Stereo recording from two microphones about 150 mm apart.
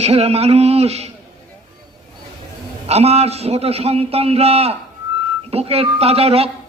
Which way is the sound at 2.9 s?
45° right (ahead or behind).